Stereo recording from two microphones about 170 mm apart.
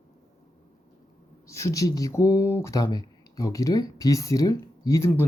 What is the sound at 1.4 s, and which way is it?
Speech, 20° left (ahead or behind).